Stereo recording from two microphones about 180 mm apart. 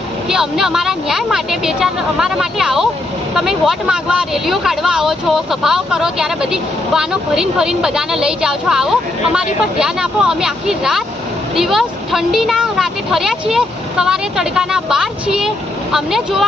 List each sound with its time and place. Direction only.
0.3 s speech: centre (ahead or behind)